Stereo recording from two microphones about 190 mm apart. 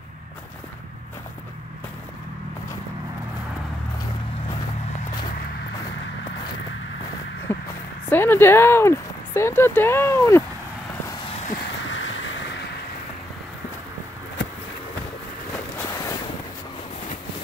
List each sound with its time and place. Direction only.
7.5 s a sound: 10° left (ahead or behind)
8.1 s speech: 10° left (ahead or behind)
11.9 s vehicle: 80° left
15.8 s boat: 15° left (ahead or behind)